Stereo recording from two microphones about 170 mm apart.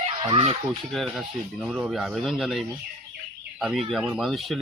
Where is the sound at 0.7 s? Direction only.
Centre (ahead or behind).